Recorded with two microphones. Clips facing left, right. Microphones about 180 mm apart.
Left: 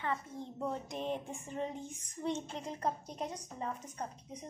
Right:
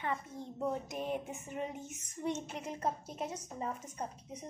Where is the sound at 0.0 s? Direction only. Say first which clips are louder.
Even; 15° right (ahead or behind).